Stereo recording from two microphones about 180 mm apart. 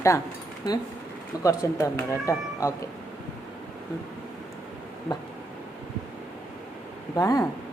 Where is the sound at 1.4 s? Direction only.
15° left (ahead or behind).